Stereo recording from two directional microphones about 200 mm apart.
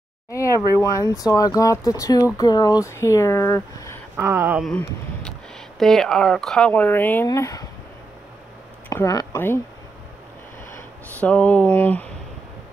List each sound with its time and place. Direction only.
0.3 s a sound: 15° left (ahead or behind)
0.7 s speech: 15° left (ahead or behind)
4.2 s speech: 15° right (ahead or behind)
4.6 s speech: 5° left (ahead or behind)
8.8 s speech: 15° left (ahead or behind)
11.1 s speech: 5° left (ahead or behind)